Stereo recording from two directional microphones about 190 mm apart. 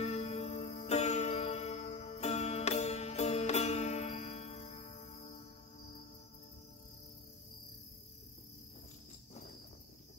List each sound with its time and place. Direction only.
0.0 s music: 35° left (ahead or behind)